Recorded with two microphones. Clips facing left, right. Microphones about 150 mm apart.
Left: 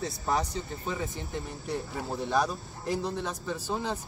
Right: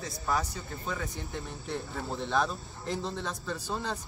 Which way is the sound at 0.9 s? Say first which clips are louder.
Even; 15° left (ahead or behind).